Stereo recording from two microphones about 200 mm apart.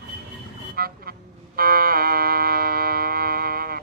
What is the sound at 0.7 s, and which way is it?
Vehicle, 50° right (ahead or behind).